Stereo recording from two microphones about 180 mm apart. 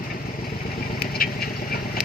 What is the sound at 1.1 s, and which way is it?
Patter, 55° left (ahead or behind).